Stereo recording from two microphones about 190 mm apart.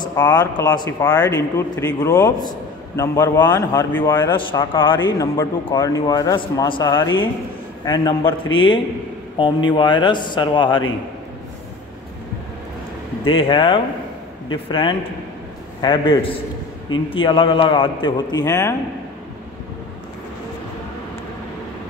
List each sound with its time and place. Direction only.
0.0 s a sound: 20° left (ahead or behind)
0.3 s a man's voice: 10° left (ahead or behind)
0.7 s a man's voice: 20° left (ahead or behind)
4.3 s a man's voice: 25° left (ahead or behind)
13.2 s a man's voice: 25° left (ahead or behind)